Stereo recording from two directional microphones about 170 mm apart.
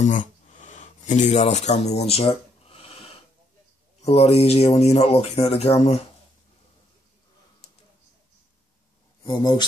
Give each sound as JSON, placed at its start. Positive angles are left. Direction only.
{"t": 0.0, "sound": "a sound", "side_deg": 50}
{"t": 4.0, "sound": "speech", "side_deg": 35}
{"t": 9.2, "sound": "speech", "side_deg": 25}